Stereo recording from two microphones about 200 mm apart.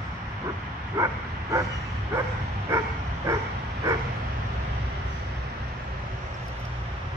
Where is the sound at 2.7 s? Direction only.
10° right (ahead or behind).